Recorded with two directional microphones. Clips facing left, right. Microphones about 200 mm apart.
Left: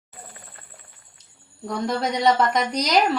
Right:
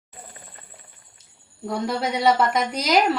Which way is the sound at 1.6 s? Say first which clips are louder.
Even; 5° right (ahead or behind).